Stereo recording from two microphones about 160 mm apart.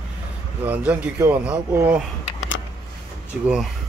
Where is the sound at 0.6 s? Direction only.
10° right (ahead or behind).